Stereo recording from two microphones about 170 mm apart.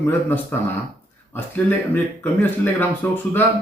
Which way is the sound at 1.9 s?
10° left (ahead or behind).